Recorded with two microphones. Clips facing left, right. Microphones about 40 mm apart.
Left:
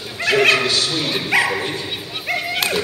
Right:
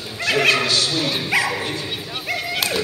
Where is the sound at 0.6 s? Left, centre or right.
Left.